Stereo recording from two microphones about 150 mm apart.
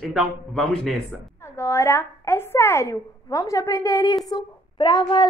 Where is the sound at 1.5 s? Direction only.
20° left (ahead or behind).